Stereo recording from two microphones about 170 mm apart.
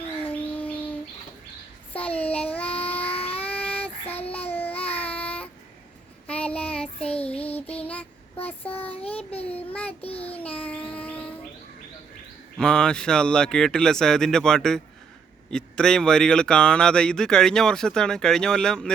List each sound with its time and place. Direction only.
0.3 s bird: 10° left (ahead or behind)
1.9 s child singing: 10° left (ahead or behind)
2.9 s a sound: 35° left (ahead or behind)
3.3 s child singing: 10° left (ahead or behind)
4.5 s babbling: 10° left (ahead or behind)
4.8 s a sound: 35° left (ahead or behind)
5.1 s child singing: 10° left (ahead or behind)
6.8 s child singing: 35° left (ahead or behind)
8.7 s child singing: 35° left (ahead or behind)
9.0 s child singing: 10° left (ahead or behind)
10.0 s child singing: 35° left (ahead or behind)
10.2 s a sound: 10° left (ahead or behind)
12.5 s speech: 5° left (ahead or behind)